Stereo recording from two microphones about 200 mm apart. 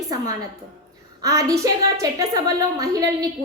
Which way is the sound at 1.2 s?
15° right (ahead or behind).